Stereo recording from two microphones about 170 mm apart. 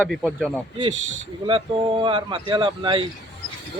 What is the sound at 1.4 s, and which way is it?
Speech, 30° right (ahead or behind).